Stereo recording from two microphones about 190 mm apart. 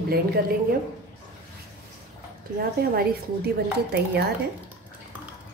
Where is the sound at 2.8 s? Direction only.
50° right (ahead or behind).